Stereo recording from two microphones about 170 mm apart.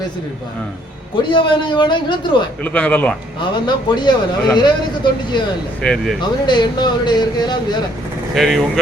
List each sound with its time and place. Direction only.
1.3 s speech: 30° left (ahead or behind)
2.6 s speech: 10° left (ahead or behind)
3.4 s speech: 25° left (ahead or behind)
5.8 s speech: 5° left (ahead or behind)
6.2 s speech: 25° left (ahead or behind)
8.4 s speech: centre (ahead or behind)